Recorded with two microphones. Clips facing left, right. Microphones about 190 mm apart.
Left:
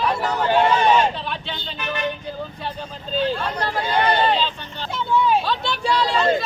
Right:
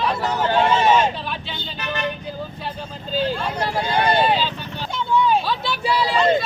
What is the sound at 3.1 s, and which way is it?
Speech, centre (ahead or behind).